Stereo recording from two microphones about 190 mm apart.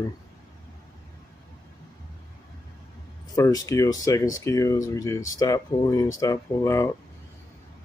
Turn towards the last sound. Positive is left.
turn(degrees=15)  # may be behind; listen again after turning